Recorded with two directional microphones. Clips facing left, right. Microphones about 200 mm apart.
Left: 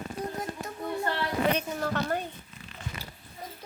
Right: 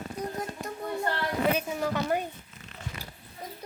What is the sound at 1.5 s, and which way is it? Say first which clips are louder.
Speech: right 1 dB; 5° right (ahead or behind).